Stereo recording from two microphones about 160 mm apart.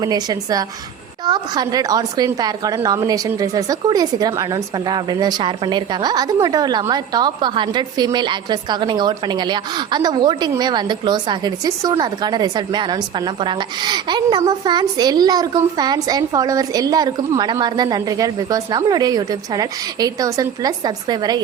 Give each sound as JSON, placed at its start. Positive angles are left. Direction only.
{"t": 0.0, "sound": "a woman's voice", "side_deg": -25}